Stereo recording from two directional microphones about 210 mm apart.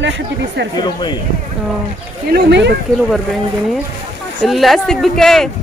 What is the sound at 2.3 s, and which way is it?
Speech, 55° right (ahead or behind).